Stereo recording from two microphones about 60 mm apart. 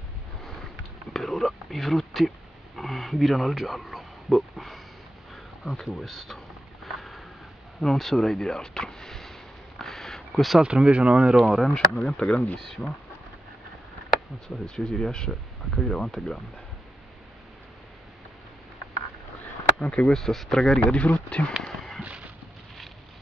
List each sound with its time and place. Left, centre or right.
1.1 s speech: centre
5.3 s a sound: centre
10.6 s speech: centre
11.3 s speech: centre
14.5 s speech: centre
20.1 s speech: centre
20.9 s speech: left
21.5 s a sound: centre